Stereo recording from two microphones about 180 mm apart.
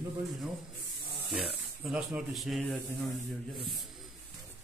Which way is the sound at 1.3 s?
5° right (ahead or behind).